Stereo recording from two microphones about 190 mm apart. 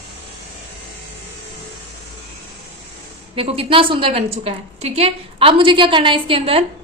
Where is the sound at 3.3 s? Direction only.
30° right (ahead or behind).